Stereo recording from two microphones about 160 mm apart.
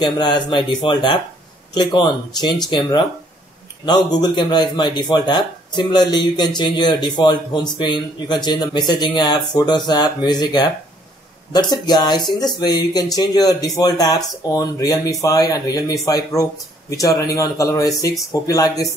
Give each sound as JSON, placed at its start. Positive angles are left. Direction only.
{"t": 0.0, "sound": "a man's voice", "side_deg": 25}